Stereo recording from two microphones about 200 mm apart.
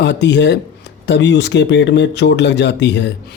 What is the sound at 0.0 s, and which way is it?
Speech, 60° left (ahead or behind).